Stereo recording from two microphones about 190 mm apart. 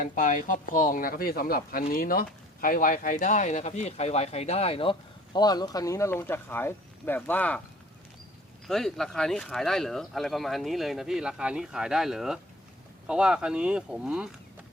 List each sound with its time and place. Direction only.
0.0 s a man's voice: 40° left (ahead or behind); by 7.6 s 10° left (ahead or behind)
8.6 s speech: centre (ahead or behind)